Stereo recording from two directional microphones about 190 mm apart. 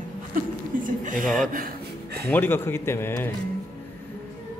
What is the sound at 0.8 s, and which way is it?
Speech, 45° right (ahead or behind).